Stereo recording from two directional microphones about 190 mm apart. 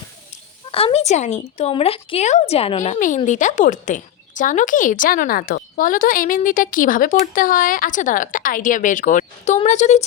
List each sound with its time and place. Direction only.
0.7 s a woman's voice: 30° left (ahead or behind)